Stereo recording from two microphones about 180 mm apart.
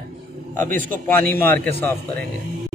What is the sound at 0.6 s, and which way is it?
Speech, 50° right (ahead or behind).